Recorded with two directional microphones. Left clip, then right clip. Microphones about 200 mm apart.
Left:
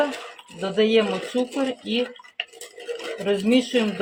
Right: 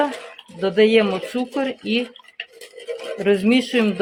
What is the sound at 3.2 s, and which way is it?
Speech, 50° right (ahead or behind).